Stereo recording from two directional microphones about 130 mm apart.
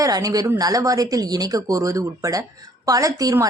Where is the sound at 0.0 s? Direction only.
25° right (ahead or behind).